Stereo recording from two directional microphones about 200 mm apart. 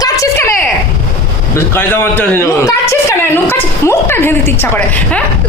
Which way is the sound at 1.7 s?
10° left (ahead or behind).